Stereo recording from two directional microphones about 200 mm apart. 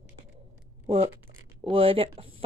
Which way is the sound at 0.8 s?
30° right (ahead or behind).